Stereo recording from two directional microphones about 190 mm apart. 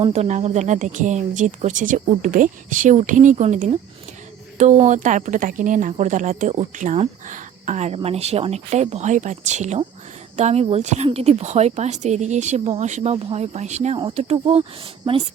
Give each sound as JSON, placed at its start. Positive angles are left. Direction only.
{"t": 0.0, "sound": "speech", "side_deg": -35}